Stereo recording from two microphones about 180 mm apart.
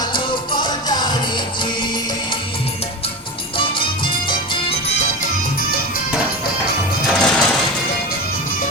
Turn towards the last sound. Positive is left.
turn(degrees=5)  # may be behind; listen again after turning